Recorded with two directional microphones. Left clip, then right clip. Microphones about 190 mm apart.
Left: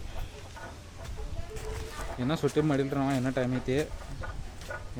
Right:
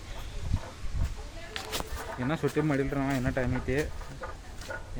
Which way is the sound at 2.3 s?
15° left (ahead or behind).